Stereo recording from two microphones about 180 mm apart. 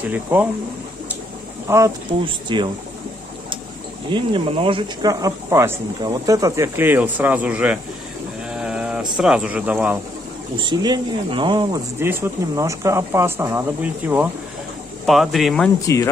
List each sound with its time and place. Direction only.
0.0 s speech: 10° right (ahead or behind)
1.7 s speech: 15° right (ahead or behind)
2.0 s speech: 25° right (ahead or behind)
4.1 s speech: 30° right (ahead or behind); by 7.8 s 5° right (ahead or behind)
8.5 s a sound: 5° right (ahead or behind)
9.1 s speech: 5° right (ahead or behind)
10.6 s speech: 25° right (ahead or behind)
12.0 s speech: 15° right (ahead or behind)